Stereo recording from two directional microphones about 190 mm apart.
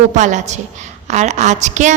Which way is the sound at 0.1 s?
40° right (ahead or behind).